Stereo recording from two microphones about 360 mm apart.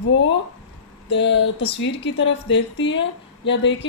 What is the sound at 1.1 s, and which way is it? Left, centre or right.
Speech, left.